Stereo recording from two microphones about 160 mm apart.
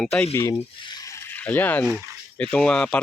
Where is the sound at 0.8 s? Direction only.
25° left (ahead or behind); by 1.8 s 10° left (ahead or behind).